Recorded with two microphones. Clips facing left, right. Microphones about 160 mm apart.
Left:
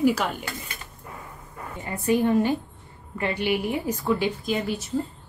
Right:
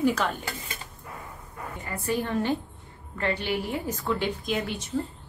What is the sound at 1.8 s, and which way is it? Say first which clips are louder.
A woman's voice: left 7 dB; 20° left (ahead or behind).